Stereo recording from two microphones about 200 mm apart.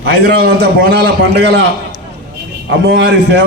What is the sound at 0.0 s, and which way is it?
A man's voice, 55° right (ahead or behind).